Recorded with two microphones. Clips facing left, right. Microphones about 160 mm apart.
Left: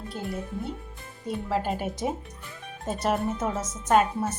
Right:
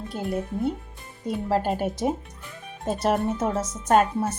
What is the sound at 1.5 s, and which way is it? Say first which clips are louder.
A woman's voice: right 4 dB; 40° right (ahead or behind).